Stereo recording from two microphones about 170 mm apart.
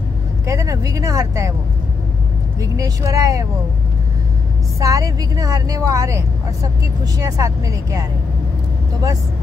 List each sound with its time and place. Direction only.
0.5 s speech: 20° right (ahead or behind)
2.6 s speech: 20° right (ahead or behind)
4.7 s speech: 20° right (ahead or behind)